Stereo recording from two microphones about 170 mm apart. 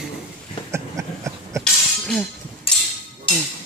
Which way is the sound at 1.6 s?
5° left (ahead or behind).